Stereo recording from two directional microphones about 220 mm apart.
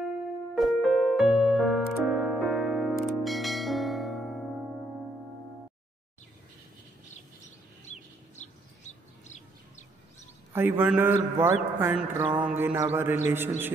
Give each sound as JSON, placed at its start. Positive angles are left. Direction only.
{"t": 0.6, "sound": "music", "side_deg": 0}
{"t": 7.8, "sound": "bird", "side_deg": 30}
{"t": 10.5, "sound": "a man's voice", "side_deg": -10}